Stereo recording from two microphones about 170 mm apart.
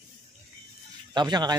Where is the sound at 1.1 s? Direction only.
25° right (ahead or behind).